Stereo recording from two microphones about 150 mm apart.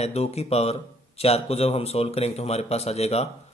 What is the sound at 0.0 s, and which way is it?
A man's voice, 45° left (ahead or behind).